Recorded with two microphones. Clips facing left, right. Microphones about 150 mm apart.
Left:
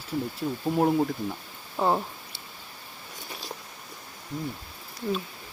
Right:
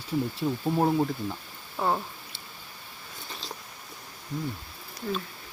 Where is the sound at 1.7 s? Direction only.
15° left (ahead or behind).